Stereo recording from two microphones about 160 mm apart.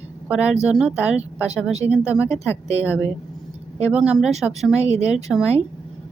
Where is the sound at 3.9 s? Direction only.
5° right (ahead or behind).